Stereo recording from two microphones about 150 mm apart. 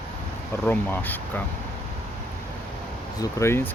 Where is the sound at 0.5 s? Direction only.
10° left (ahead or behind).